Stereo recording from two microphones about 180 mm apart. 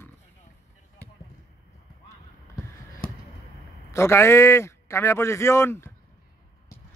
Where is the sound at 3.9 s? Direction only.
15° left (ahead or behind).